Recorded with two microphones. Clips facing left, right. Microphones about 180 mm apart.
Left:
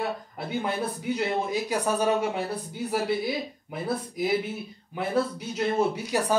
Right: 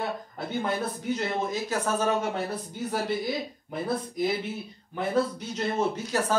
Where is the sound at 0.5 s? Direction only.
10° left (ahead or behind).